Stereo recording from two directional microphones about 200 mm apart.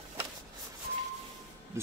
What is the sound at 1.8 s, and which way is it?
Speech, 15° right (ahead or behind).